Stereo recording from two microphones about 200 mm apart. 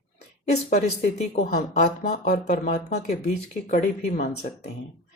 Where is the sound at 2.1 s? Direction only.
45° left (ahead or behind).